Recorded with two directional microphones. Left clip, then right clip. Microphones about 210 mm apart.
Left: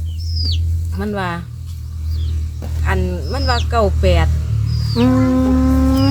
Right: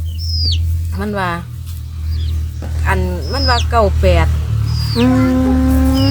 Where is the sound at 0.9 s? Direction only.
10° left (ahead or behind).